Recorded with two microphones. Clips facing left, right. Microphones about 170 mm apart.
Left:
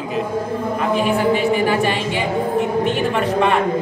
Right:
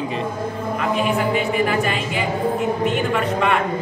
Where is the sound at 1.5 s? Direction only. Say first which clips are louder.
Left 3 dB; 30° left (ahead or behind).